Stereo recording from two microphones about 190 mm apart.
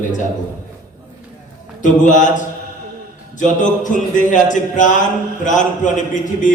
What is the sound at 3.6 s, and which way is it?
A man's voice, 40° left (ahead or behind).